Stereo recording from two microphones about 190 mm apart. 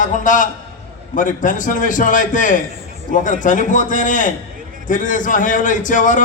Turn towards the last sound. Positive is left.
turn(degrees=45)  # may be behind; listen again after turning